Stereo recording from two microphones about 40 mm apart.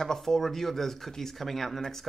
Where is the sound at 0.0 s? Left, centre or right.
Centre.